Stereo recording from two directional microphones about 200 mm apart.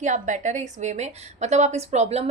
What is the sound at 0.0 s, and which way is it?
A woman's voice, 40° right (ahead or behind).